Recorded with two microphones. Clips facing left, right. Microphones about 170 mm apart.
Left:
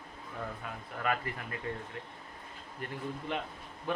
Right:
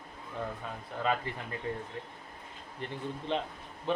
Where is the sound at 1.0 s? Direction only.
25° right (ahead or behind).